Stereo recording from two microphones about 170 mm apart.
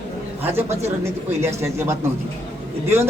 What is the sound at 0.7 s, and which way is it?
Speech, 40° right (ahead or behind).